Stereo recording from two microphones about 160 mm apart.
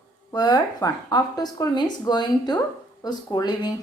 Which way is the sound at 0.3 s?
25° left (ahead or behind).